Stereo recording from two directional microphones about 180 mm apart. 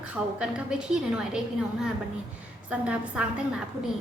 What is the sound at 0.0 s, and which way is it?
A woman's voice, 5° right (ahead or behind).